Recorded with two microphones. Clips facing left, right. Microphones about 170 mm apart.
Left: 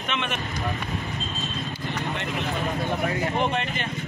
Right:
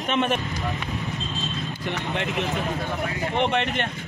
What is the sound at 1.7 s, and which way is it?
Speech, 70° right (ahead or behind).